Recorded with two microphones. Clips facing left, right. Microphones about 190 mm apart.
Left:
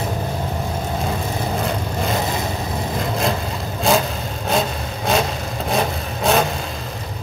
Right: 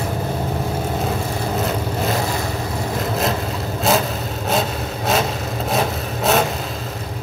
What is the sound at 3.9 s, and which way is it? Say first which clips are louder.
Vehicle: left 1 dB; centre (ahead or behind).